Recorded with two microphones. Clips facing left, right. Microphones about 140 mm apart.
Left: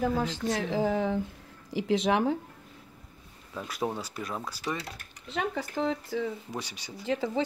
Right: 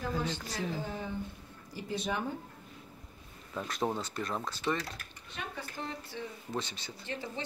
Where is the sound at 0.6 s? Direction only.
90° left.